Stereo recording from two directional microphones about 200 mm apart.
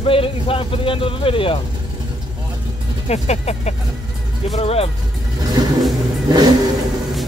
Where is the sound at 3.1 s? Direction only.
30° left (ahead or behind).